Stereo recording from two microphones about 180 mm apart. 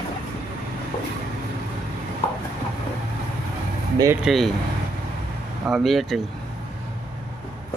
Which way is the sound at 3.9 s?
20° right (ahead or behind).